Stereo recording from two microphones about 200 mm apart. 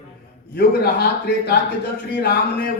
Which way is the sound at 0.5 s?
50° left (ahead or behind).